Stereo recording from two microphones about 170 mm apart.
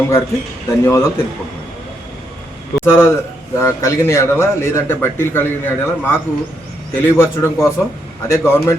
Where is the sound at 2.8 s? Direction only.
15° left (ahead or behind).